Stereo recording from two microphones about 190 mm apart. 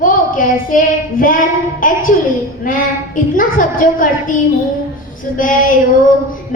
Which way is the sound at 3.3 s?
45° left (ahead or behind).